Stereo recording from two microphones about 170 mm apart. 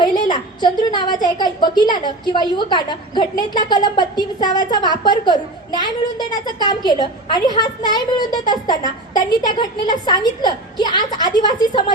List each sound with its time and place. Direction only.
0.0 s a woman's voice: 25° left (ahead or behind)